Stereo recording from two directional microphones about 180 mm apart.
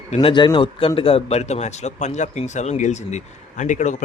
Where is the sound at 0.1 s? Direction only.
30° left (ahead or behind).